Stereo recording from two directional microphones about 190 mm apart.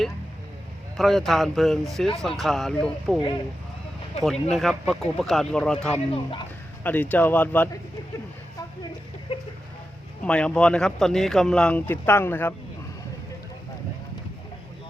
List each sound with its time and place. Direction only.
0.9 s speech: centre (ahead or behind)
4.2 s speech: centre (ahead or behind)
9.3 s speech: 25° left (ahead or behind)
10.2 s speech: 5° left (ahead or behind)